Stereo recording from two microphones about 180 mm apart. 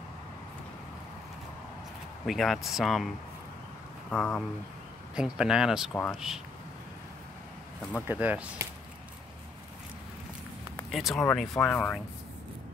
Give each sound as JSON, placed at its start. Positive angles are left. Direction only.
{"t": 2.2, "sound": "speech", "side_deg": 0}
{"t": 4.1, "sound": "speech", "side_deg": 10}
{"t": 5.1, "sound": "speech", "side_deg": -5}
{"t": 8.1, "sound": "speech", "side_deg": -10}
{"t": 10.9, "sound": "speech", "side_deg": 0}